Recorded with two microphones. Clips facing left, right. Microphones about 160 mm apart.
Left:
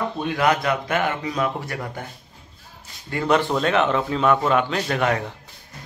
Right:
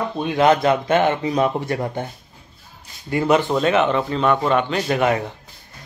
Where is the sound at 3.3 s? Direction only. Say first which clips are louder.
Right 1 dB; centre (ahead or behind).